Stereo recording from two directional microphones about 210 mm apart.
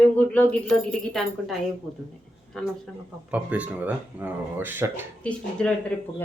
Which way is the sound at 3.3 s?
5° right (ahead or behind).